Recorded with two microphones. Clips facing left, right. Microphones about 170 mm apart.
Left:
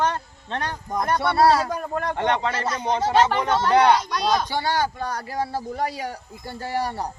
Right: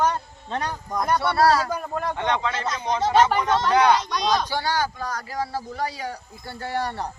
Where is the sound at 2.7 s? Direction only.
30° left (ahead or behind).